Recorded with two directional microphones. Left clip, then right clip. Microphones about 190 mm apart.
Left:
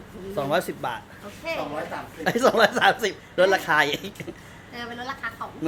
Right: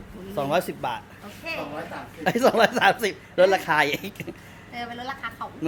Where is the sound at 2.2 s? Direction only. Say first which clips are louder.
Even; 15° right (ahead or behind).